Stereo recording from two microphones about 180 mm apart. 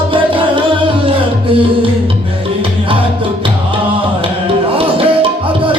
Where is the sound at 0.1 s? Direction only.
30° right (ahead or behind).